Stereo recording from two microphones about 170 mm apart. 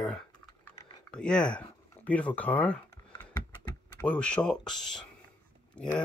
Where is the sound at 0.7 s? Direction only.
20° left (ahead or behind).